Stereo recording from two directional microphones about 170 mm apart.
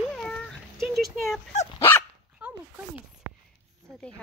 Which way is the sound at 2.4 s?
10° right (ahead or behind).